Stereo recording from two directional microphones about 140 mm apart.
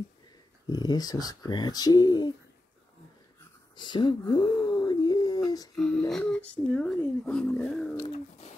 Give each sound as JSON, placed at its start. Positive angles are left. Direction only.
{"t": 0.7, "sound": "speech", "side_deg": 30}
{"t": 3.7, "sound": "a sound", "side_deg": 35}
{"t": 5.8, "sound": "speech", "side_deg": 5}